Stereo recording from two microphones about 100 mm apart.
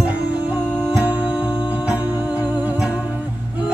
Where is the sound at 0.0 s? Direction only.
15° right (ahead or behind).